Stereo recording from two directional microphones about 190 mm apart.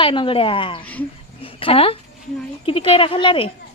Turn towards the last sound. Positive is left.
turn(degrees=30)  # may be behind; listen again after turning